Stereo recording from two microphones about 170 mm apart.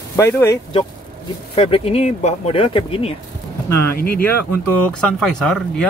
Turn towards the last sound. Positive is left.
turn(degrees=5)  # may be behind; listen again after turning